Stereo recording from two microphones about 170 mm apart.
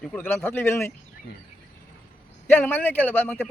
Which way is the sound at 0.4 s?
15° left (ahead or behind).